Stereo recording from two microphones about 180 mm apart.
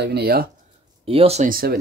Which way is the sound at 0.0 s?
65° right (ahead or behind).